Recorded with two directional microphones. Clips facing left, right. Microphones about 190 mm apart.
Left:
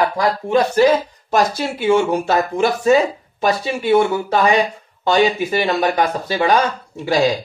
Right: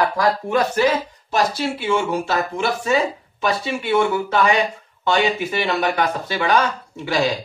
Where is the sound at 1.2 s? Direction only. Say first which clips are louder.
Left 2 dB; 50° left (ahead or behind).